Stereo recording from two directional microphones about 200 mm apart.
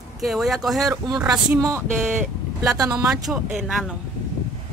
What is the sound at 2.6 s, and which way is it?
Speech, 15° right (ahead or behind).